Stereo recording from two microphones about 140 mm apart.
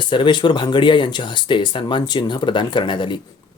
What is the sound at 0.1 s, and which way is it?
Speech, 35° left (ahead or behind).